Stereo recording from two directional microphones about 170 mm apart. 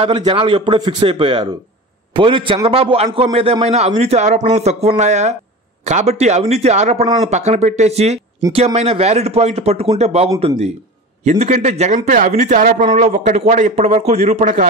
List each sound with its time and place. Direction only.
0.0 s a man's voice: 30° right (ahead or behind); by 14.7 s 45° right (ahead or behind)